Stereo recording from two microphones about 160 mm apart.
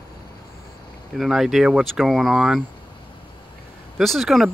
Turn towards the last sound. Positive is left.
turn(degrees=0)  # may be behind; listen again after turning